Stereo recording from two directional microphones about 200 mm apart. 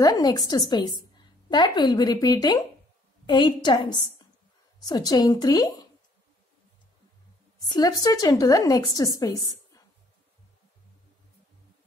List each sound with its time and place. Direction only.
0.0 s a woman's voice: 20° left (ahead or behind)
7.5 s a sound: 20° left (ahead or behind)
8.0 s a woman's voice: 20° left (ahead or behind)